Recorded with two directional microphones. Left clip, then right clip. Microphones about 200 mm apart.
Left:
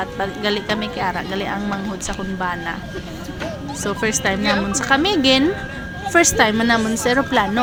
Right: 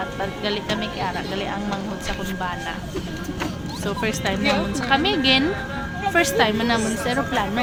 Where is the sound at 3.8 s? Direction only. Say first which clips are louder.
Left 4 dB; 25° left (ahead or behind).